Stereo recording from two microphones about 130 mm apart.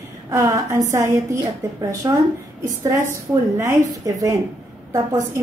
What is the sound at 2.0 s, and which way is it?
A woman's voice, 30° right (ahead or behind).